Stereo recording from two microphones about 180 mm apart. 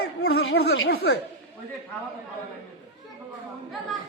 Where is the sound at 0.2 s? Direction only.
65° left (ahead or behind).